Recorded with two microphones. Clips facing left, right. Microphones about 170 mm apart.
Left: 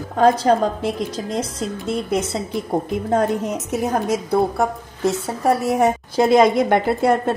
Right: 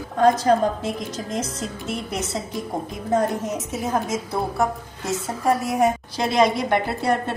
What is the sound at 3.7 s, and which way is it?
Speech, 65° left (ahead or behind).